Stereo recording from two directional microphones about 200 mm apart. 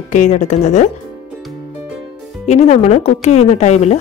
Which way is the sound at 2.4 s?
35° left (ahead or behind).